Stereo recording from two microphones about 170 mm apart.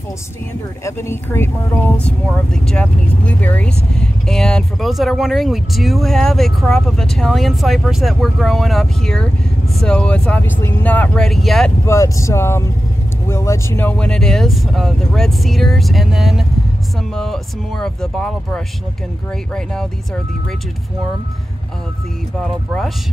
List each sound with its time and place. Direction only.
0.8 s speech: 15° left (ahead or behind)
11.8 s speech: 15° left (ahead or behind)
22.4 s speech: centre (ahead or behind)